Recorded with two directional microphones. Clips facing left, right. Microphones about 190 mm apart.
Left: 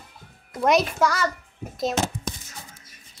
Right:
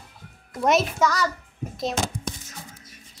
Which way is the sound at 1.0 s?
10° left (ahead or behind).